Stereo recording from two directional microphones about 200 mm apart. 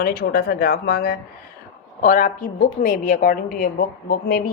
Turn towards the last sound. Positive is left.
turn(degrees=50)  # may be behind; listen again after turning